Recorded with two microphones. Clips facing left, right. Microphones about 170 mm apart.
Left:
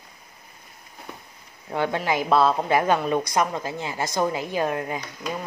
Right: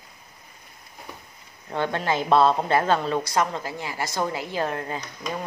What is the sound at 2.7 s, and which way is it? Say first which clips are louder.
A woman's voice: left 1 dB; 15° left (ahead or behind).